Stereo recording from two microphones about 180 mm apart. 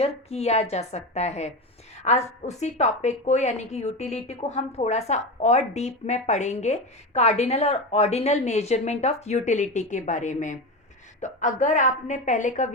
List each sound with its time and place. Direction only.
0.0 s a woman's voice: 35° left (ahead or behind)